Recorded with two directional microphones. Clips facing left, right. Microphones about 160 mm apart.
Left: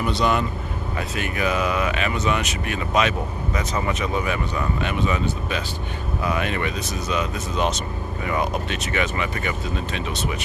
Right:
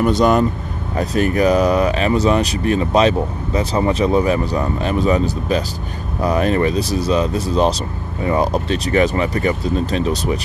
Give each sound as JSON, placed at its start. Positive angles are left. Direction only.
{"t": 0.0, "sound": "speech", "side_deg": -45}